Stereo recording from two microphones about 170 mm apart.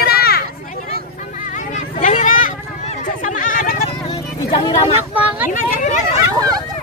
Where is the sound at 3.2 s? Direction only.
50° left (ahead or behind).